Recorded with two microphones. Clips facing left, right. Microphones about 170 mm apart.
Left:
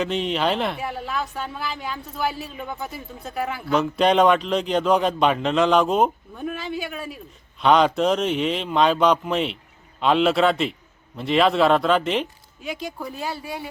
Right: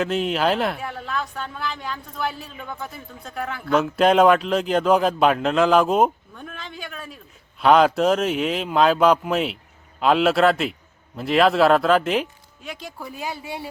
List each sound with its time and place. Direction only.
0.0 s speech: 5° right (ahead or behind)
6.3 s speech: 10° left (ahead or behind)
7.6 s speech: 5° right (ahead or behind)
13.1 s speech: 15° right (ahead or behind)